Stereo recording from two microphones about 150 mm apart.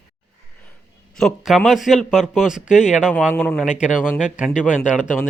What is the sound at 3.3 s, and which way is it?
Speech, 5° left (ahead or behind).